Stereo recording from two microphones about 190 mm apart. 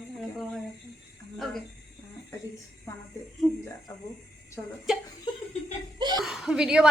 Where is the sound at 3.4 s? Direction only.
Centre (ahead or behind).